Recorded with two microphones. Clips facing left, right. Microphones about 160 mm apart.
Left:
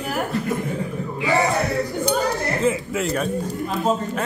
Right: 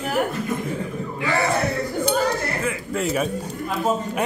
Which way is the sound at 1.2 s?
20° left (ahead or behind).